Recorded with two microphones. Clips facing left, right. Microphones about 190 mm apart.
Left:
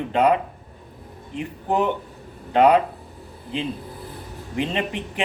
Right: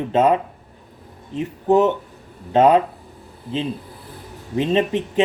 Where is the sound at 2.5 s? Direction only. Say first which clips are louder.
Right 2 dB; 20° right (ahead or behind).